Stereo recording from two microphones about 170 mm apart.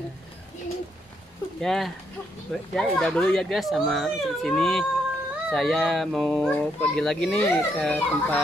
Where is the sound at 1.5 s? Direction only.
Centre (ahead or behind).